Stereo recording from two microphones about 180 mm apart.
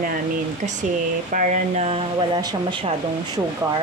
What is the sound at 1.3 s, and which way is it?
Speech, 45° right (ahead or behind).